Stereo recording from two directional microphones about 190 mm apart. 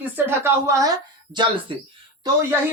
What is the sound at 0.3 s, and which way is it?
A woman's voice, 10° right (ahead or behind).